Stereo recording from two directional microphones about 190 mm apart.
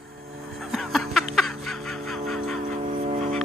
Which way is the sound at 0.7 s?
Centre (ahead or behind).